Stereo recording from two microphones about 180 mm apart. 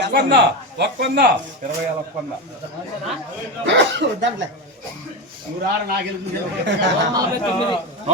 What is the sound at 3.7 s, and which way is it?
Speech, 85° right.